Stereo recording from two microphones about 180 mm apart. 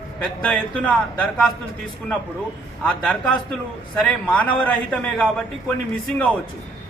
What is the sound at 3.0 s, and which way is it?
Speech, 5° left (ahead or behind).